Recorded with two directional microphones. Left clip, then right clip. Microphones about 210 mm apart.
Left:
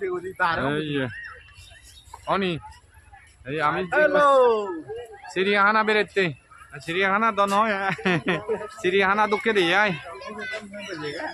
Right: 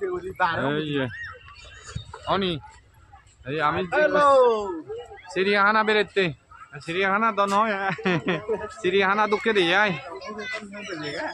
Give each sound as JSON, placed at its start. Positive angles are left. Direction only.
{"t": 0.0, "sound": "speech", "side_deg": 10}
{"t": 2.2, "sound": "a man's voice", "side_deg": -5}
{"t": 10.1, "sound": "speech", "side_deg": -30}